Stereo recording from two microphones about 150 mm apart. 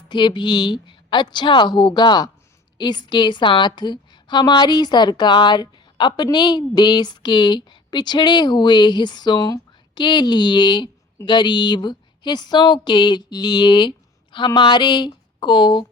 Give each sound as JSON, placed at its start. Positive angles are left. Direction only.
{"t": 0.1, "sound": "a woman's voice", "side_deg": 30}